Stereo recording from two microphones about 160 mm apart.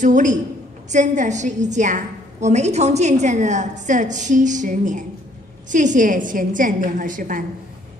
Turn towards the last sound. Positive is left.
turn(degrees=-55)  # may be behind; listen again after turning